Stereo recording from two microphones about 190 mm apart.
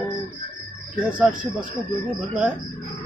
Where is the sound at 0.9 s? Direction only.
5° right (ahead or behind).